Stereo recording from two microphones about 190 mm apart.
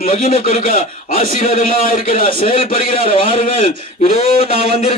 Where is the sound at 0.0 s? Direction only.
45° left (ahead or behind).